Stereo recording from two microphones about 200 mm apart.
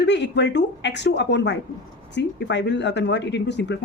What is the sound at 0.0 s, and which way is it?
A woman's voice, 60° left (ahead or behind).